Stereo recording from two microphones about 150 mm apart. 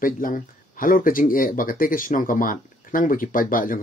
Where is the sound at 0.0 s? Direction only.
65° left (ahead or behind).